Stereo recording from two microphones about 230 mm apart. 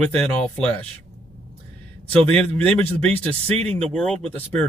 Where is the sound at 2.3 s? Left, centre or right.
Centre.